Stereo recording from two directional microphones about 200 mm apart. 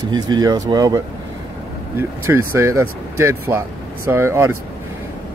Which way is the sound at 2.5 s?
15° right (ahead or behind).